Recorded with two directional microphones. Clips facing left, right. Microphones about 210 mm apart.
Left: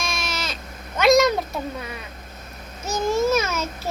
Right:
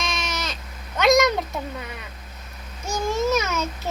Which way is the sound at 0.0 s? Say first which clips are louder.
Even; 15° right (ahead or behind).